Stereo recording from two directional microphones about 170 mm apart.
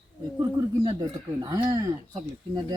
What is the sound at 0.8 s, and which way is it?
Speech, 30° right (ahead or behind).